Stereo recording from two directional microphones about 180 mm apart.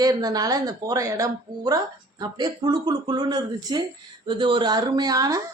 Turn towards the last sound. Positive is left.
turn(degrees=-20)  # may be behind; listen again after turning